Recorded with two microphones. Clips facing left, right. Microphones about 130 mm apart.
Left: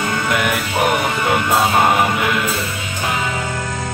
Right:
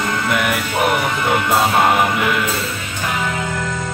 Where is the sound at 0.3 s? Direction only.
Centre (ahead or behind).